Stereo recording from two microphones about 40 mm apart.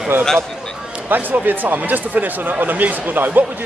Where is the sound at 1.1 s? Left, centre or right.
Right.